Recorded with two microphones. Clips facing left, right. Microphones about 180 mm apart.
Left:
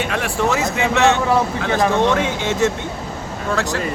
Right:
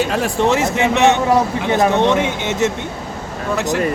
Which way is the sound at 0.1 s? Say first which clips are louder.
Right 3 dB; 30° right (ahead or behind).